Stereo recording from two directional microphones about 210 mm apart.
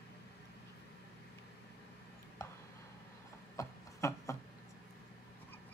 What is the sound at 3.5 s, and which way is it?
Rub, 15° left (ahead or behind).